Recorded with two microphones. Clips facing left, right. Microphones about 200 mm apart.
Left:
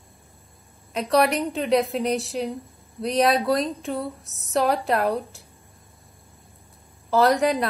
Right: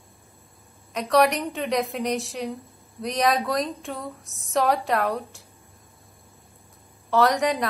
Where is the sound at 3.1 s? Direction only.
30° left (ahead or behind).